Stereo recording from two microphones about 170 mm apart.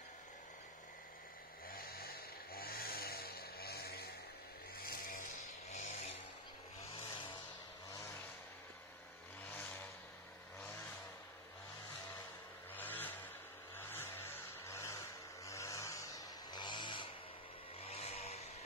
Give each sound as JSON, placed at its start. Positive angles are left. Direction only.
{"t": 1.7, "sound": "chainsaw", "side_deg": 60}
{"t": 4.7, "sound": "vehicle", "side_deg": 60}
{"t": 5.7, "sound": "a sound", "side_deg": 45}
{"t": 12.7, "sound": "vehicle", "side_deg": 10}
{"t": 15.4, "sound": "a sound", "side_deg": 20}
{"t": 17.7, "sound": "vehicle", "side_deg": 35}